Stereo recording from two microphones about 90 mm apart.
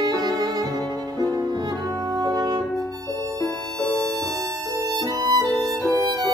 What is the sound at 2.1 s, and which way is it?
Music, 45° right (ahead or behind).